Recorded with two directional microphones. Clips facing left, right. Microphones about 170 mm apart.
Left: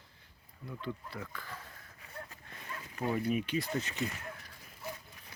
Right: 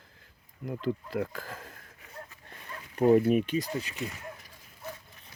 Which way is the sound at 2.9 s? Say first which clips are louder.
Right 11 dB; 40° right (ahead or behind).